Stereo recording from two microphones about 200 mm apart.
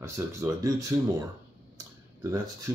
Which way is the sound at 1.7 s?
15° right (ahead or behind).